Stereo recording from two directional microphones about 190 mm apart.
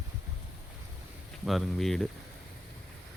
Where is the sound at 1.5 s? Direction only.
Centre (ahead or behind).